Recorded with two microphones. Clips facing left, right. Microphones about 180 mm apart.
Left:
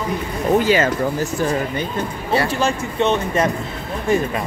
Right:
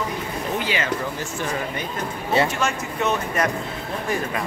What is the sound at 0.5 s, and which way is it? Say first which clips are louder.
Speech: left 9 dB; 45° left (ahead or behind).